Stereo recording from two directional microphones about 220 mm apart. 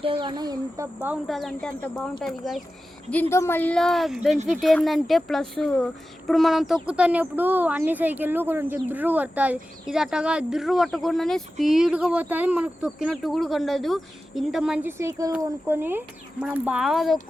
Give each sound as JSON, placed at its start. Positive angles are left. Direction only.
{"t": 0.0, "sound": "speech", "side_deg": -25}
{"t": 0.9, "sound": "speech", "side_deg": -5}